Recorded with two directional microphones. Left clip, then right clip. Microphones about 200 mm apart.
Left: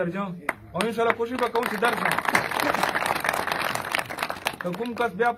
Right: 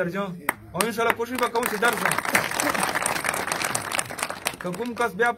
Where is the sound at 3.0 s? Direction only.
40° left (ahead or behind).